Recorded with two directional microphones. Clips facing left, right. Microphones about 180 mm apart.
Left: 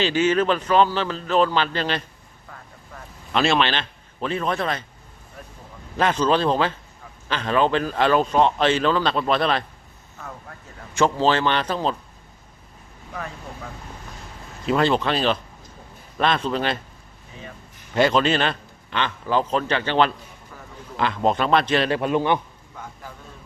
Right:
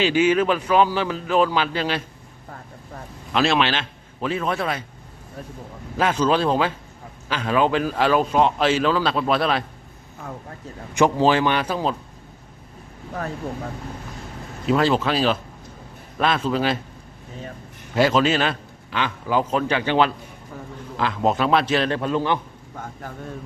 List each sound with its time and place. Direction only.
0.0 s speech: 10° right (ahead or behind)
3.3 s speech: centre (ahead or behind)
6.0 s speech: 10° right (ahead or behind)
10.9 s speech: 15° right (ahead or behind)
14.7 s a man's voice: 5° right (ahead or behind)
17.9 s a man's voice: 5° right (ahead or behind)
21.8 s a man's voice: 10° left (ahead or behind)
22.8 s speech: 55° right (ahead or behind)